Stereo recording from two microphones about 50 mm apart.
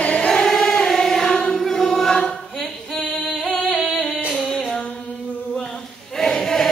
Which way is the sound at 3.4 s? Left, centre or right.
Centre.